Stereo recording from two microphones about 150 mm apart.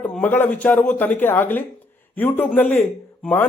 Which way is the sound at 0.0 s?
10° left (ahead or behind).